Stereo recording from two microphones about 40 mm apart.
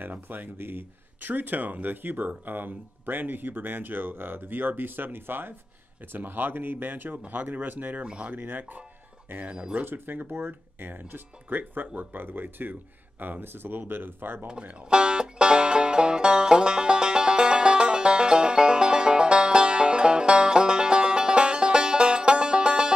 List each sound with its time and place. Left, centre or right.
0.0 s speech: right
8.0 s speech: right
8.3 s speech: right
9.4 s speech: right
9.8 s speech: right
14.9 s music: right